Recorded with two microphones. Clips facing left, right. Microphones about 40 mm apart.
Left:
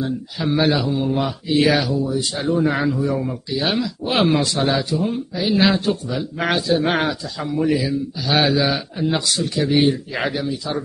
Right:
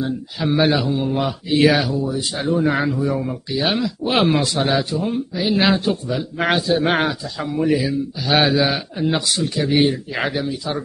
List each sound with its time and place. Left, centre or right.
0.0 s a man's voice: centre